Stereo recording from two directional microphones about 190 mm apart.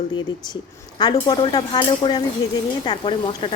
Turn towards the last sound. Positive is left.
turn(degrees=25)  # may be behind; listen again after turning